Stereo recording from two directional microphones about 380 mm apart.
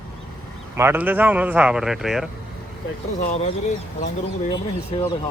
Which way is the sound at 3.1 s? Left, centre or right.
Centre.